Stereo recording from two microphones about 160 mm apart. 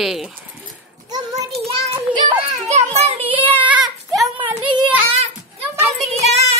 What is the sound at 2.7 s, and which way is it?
Child singing, 40° right (ahead or behind).